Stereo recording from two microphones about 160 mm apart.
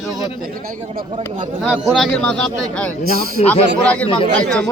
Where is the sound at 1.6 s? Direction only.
Centre (ahead or behind).